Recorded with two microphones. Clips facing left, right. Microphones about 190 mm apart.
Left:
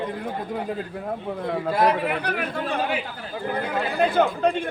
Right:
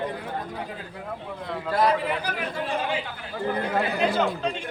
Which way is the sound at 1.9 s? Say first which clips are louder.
Left 2 dB; 60° left (ahead or behind).